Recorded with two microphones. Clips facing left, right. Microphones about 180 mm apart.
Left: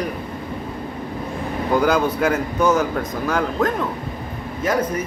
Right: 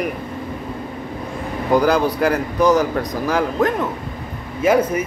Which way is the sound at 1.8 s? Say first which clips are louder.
Right 1 dB; centre (ahead or behind).